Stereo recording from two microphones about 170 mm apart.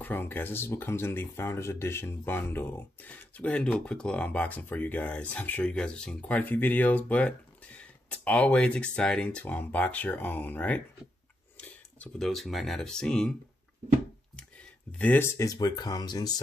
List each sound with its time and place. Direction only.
0.0 s speech: 10° left (ahead or behind)
14.3 s speech: 5° left (ahead or behind); by 16.3 s 25° left (ahead or behind)